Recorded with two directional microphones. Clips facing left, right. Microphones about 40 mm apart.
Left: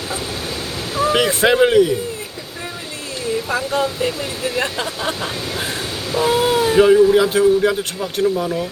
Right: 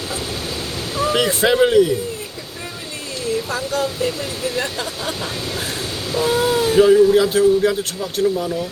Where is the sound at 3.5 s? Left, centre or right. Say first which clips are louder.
Left 2 dB; left.